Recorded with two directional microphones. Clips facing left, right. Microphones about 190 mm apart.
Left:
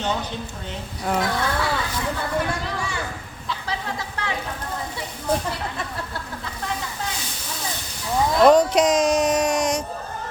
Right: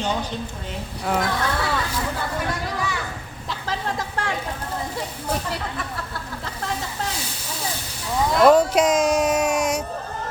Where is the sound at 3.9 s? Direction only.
50° right (ahead or behind).